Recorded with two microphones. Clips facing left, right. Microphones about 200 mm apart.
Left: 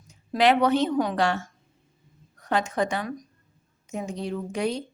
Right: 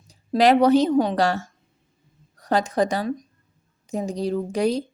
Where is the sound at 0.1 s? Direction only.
35° right (ahead or behind).